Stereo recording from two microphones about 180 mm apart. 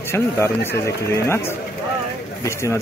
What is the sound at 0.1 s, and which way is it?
A man's voice, 15° left (ahead or behind).